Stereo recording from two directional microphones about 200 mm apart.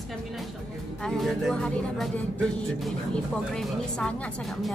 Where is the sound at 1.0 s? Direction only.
Centre (ahead or behind).